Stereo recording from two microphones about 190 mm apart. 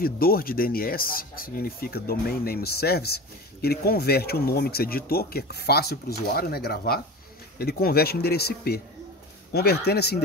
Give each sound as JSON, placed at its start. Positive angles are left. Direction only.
{"t": 0.0, "sound": "speech", "side_deg": 50}